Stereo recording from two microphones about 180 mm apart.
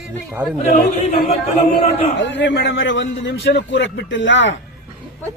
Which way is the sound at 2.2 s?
75° left (ahead or behind).